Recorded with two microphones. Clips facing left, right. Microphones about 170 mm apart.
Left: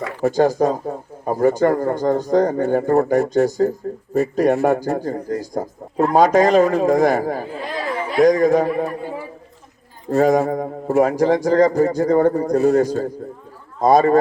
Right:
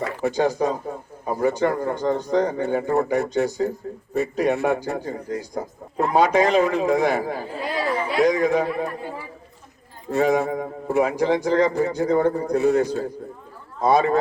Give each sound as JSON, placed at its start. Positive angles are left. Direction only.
{"t": 0.2, "sound": "speech", "side_deg": 45}
{"t": 10.1, "sound": "speech", "side_deg": 40}